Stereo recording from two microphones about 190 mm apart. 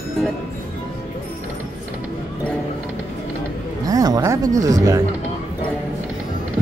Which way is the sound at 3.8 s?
20° right (ahead or behind).